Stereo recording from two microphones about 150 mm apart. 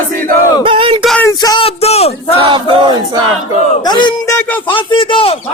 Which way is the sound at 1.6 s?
45° left (ahead or behind).